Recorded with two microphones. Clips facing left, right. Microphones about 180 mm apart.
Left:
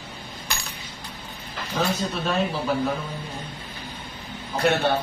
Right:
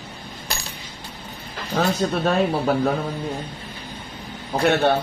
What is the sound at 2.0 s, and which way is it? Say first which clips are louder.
Speech: right 5 dB; 55° right (ahead or behind).